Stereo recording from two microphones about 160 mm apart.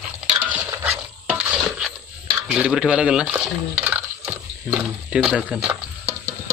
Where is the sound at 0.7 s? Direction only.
15° right (ahead or behind).